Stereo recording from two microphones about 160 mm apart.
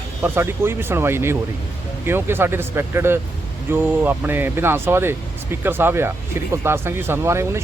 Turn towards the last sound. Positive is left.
turn(degrees=-15)  # may be behind; listen again after turning